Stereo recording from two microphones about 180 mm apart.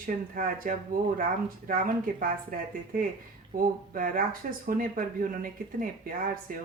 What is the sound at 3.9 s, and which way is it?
Speech, 50° right (ahead or behind).